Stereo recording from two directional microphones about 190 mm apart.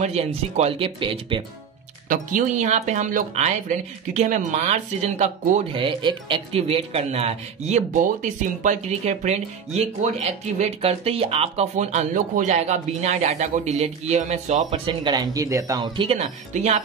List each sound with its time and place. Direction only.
0.0 s speech: 35° right (ahead or behind)
2.0 s speech: 40° right (ahead or behind)
5.8 s speech: 25° right (ahead or behind)
16.2 s speech: 40° right (ahead or behind)